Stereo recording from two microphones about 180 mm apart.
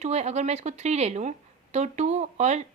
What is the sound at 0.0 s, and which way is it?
Speech, 40° right (ahead or behind).